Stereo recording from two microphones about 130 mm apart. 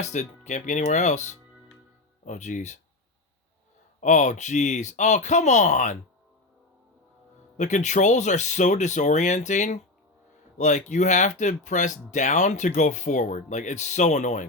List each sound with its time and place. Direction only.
0.0 s speech: 65° left (ahead or behind)
4.0 s speech: 70° left (ahead or behind)
7.5 s speech: 65° left (ahead or behind)